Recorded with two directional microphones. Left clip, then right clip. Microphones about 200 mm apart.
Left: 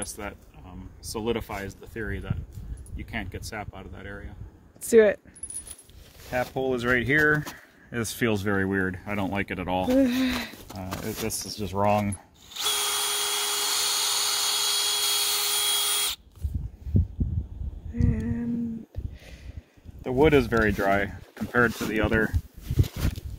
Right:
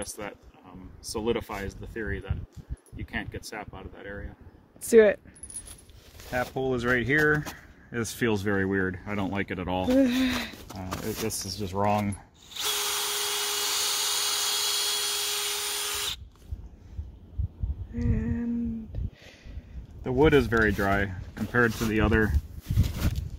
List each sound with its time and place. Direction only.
0.0 s speech: 15° left (ahead or behind)
4.8 s speech: centre (ahead or behind)
6.3 s speech: 30° left (ahead or behind)
9.8 s speech: 5° left (ahead or behind)
11.2 s speech: 30° left (ahead or behind)
12.4 s drill: 10° left (ahead or behind)
17.9 s female singing: 10° left (ahead or behind)
20.0 s speech: 30° left (ahead or behind)
22.8 s a sound: 5° right (ahead or behind)